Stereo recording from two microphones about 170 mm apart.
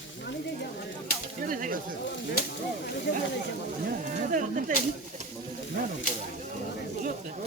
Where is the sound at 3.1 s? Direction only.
90° left.